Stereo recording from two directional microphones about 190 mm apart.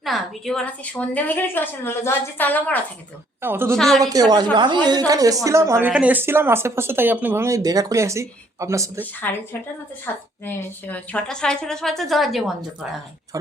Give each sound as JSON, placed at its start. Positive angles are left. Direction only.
{"t": 0.0, "sound": "a woman's voice", "side_deg": 0}
{"t": 3.4, "sound": "a woman's voice", "side_deg": -10}
{"t": 3.8, "sound": "a woman's voice", "side_deg": 0}
{"t": 4.0, "sound": "a woman's voice", "side_deg": -20}
{"t": 9.2, "sound": "a woman's voice", "side_deg": 10}
{"t": 13.3, "sound": "a woman's voice", "side_deg": -20}